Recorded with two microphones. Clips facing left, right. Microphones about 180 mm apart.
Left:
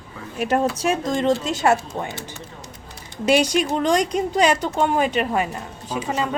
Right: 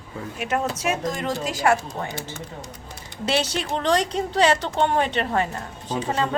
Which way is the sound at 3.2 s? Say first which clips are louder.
Left 6 dB; 15° left (ahead or behind).